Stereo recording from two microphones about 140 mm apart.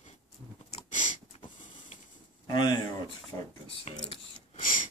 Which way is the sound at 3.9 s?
50° left (ahead or behind).